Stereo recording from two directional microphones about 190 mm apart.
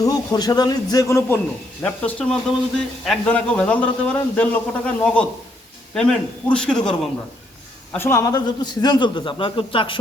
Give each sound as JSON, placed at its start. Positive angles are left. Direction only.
{"t": 0.0, "sound": "a man's voice", "side_deg": 20}
{"t": 7.9, "sound": "a man's voice", "side_deg": 15}